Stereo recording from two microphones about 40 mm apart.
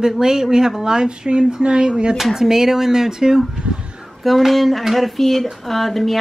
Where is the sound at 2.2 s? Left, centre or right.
Centre.